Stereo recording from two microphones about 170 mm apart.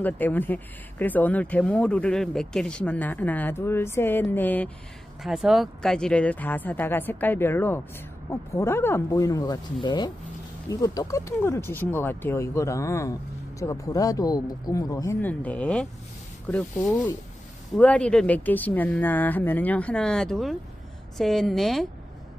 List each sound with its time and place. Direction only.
0.0 s speech: 10° left (ahead or behind)
5.2 s speech: centre (ahead or behind)